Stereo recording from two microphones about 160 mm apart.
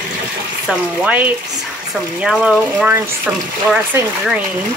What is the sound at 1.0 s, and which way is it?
Speech, 10° right (ahead or behind).